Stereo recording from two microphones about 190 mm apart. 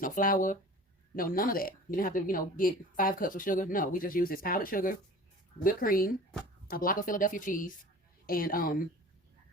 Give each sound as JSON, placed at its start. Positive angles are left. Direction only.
{"t": 0.0, "sound": "speech", "side_deg": 45}